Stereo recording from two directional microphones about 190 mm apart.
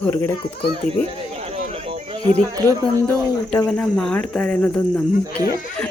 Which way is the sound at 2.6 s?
15° right (ahead or behind).